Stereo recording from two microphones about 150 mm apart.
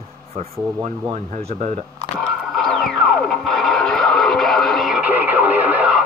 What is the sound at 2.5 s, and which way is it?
Music, centre (ahead or behind).